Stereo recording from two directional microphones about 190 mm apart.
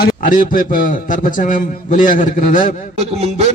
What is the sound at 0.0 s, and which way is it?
A man's voice, 45° left (ahead or behind).